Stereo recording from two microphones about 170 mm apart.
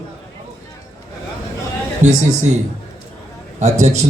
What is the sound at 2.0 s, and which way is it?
Speech, 45° right (ahead or behind).